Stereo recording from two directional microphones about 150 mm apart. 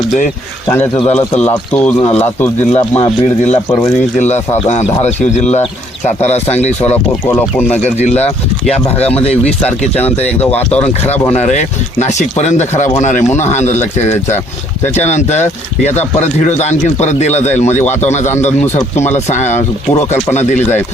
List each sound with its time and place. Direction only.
1.4 s speech: 10° left (ahead or behind)
2.6 s speech: 45° left (ahead or behind)
6.9 s speech: 10° left (ahead or behind)
7.8 s speech: 50° left (ahead or behind)
9.0 s speech: 10° left (ahead or behind)
11.3 s speech: 50° left (ahead or behind)
14.9 s speech: 50° left (ahead or behind)